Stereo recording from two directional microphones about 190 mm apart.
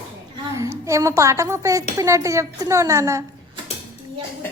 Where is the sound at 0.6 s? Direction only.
15° right (ahead or behind).